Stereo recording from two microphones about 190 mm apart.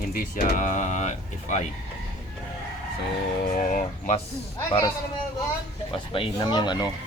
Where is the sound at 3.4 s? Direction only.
45° left (ahead or behind).